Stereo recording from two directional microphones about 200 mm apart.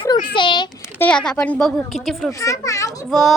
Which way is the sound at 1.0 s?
5° left (ahead or behind).